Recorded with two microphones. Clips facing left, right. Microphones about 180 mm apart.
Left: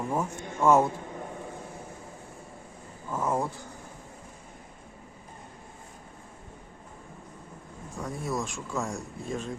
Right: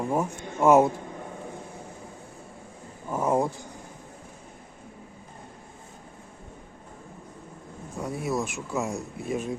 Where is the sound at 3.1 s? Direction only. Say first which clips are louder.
Right 4 dB; 15° right (ahead or behind).